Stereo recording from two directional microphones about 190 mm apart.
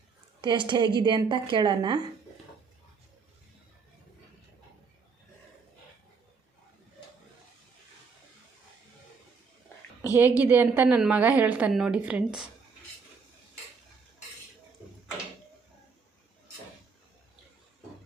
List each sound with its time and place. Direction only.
0.4 s a woman's voice: 25° right (ahead or behind)
10.2 s a woman's voice: 10° right (ahead or behind)